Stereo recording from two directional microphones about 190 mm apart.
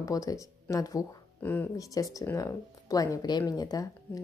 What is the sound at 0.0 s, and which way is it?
Speech, 20° left (ahead or behind).